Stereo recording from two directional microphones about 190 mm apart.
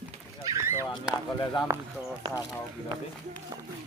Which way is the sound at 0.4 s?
15° right (ahead or behind).